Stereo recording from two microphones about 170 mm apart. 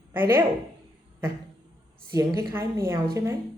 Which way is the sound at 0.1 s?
15° right (ahead or behind).